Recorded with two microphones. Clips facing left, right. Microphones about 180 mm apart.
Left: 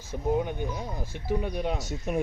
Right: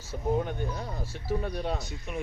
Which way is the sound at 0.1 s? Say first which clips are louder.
Left 2 dB; 15° left (ahead or behind).